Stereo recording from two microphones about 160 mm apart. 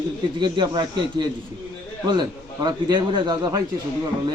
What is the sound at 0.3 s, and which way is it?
A man's voice, 30° right (ahead or behind).